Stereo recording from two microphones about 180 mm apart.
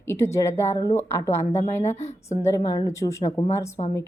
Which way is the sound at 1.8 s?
35° left (ahead or behind).